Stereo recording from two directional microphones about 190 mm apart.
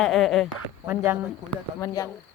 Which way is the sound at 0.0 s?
Centre (ahead or behind).